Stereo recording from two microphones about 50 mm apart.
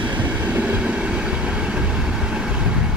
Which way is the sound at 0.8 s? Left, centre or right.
Right.